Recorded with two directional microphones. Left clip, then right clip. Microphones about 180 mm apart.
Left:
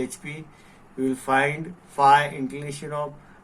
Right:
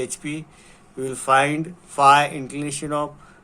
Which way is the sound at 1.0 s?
40° right (ahead or behind).